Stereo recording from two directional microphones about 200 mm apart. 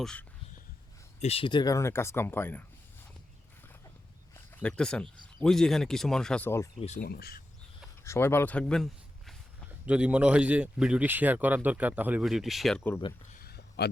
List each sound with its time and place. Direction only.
0.0 s speech: 5° left (ahead or behind)
1.2 s speech: 30° left (ahead or behind); by 2.6 s 10° left (ahead or behind)
4.4 s speech: 5° left (ahead or behind)
6.7 s speech: 35° left (ahead or behind)
7.0 s speech: 50° left (ahead or behind)
8.0 s speech: 10° left (ahead or behind)
13.3 s a sound: 50° left (ahead or behind)